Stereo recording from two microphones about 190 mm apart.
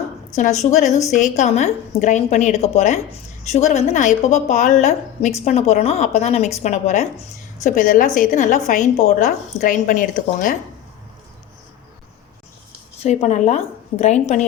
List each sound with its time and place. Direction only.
0.3 s a woman's voice: 35° left (ahead or behind)
13.0 s a woman's voice: 35° left (ahead or behind)